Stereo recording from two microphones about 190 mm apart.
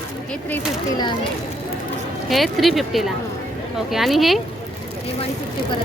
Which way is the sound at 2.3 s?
Centre (ahead or behind).